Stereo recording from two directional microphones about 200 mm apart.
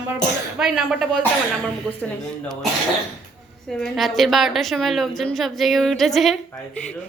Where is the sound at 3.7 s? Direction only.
5° left (ahead or behind).